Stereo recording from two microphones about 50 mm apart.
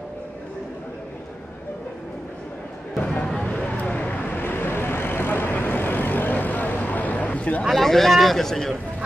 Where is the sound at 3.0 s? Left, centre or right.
Left.